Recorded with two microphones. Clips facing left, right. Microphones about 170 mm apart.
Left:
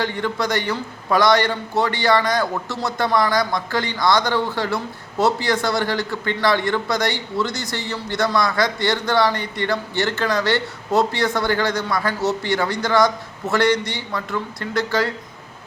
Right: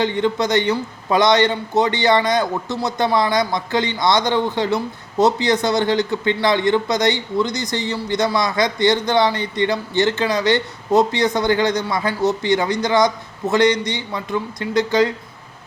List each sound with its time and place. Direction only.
0.0 s a man's voice: 20° right (ahead or behind)